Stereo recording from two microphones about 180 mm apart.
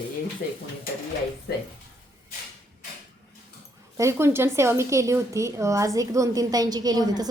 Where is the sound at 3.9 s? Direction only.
15° right (ahead or behind).